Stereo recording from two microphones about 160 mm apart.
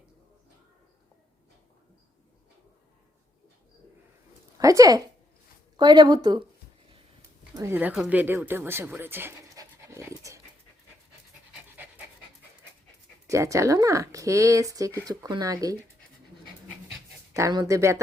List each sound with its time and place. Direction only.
4.6 s speech: 20° right (ahead or behind)
7.5 s speech: 15° right (ahead or behind)
13.2 s speech: 20° right (ahead or behind)
17.3 s speech: 20° right (ahead or behind)